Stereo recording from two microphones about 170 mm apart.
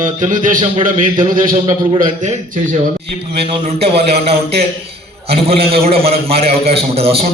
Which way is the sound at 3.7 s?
35° right (ahead or behind).